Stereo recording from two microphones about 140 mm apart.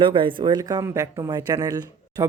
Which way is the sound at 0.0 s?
35° right (ahead or behind).